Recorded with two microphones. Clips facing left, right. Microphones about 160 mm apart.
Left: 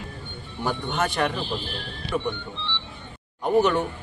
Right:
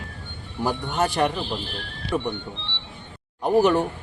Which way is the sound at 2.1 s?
20° right (ahead or behind).